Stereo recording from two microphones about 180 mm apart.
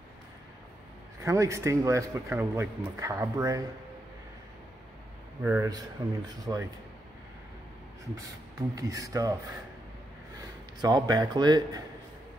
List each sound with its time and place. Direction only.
1.2 s speech: 15° right (ahead or behind)
5.4 s speech: 15° right (ahead or behind)
8.2 s speech: 20° right (ahead or behind)
10.8 s speech: 20° right (ahead or behind)